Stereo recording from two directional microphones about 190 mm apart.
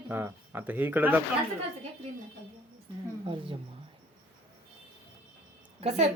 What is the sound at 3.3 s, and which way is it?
Speech, 25° right (ahead or behind).